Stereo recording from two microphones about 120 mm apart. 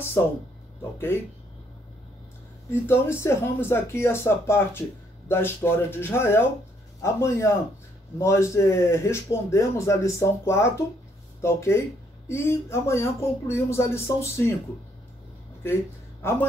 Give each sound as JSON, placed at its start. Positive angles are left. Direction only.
{"t": 0.2, "sound": "a man's voice", "side_deg": 20}
{"t": 2.7, "sound": "a man's voice", "side_deg": 20}
{"t": 15.6, "sound": "speech", "side_deg": 20}